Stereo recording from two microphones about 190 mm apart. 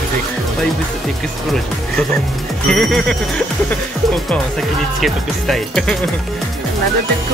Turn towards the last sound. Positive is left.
turn(degrees=0)  # may be behind; listen again after turning